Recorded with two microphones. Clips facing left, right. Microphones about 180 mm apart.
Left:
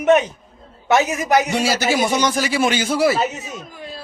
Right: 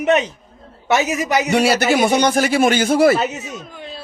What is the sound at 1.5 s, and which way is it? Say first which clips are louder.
Speech: right 4 dB; 60° right (ahead or behind).